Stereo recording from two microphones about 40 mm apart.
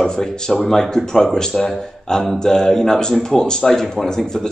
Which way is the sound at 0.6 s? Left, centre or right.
Centre.